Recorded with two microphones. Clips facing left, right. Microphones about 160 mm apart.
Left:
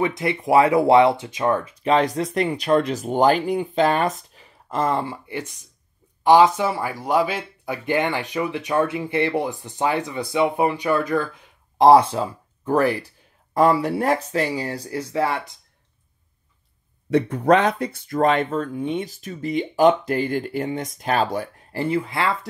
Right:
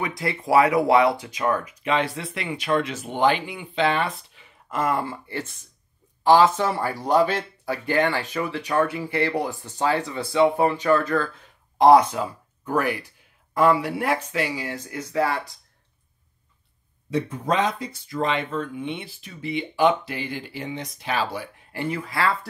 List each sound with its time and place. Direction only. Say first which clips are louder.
0.0 s speech: left 5 dB; 20° left (ahead or behind)
5.0 s speech: left 1 dB; 15° left (ahead or behind)
11.8 s speech: left 2 dB; 30° left (ahead or behind)
17.1 s speech: left 7 dB; 65° left (ahead or behind); by 21.8 s 45° left (ahead or behind)
21.8 s speech: left 2 dB; 25° left (ahead or behind)